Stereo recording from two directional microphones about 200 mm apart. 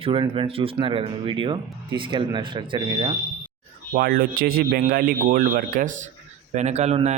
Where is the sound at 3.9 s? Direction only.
50° right (ahead or behind); by 7.1 s 35° right (ahead or behind).